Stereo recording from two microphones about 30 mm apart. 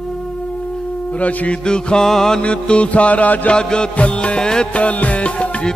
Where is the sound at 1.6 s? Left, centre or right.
Left.